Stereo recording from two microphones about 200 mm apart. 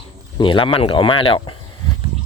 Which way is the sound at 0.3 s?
25° left (ahead or behind).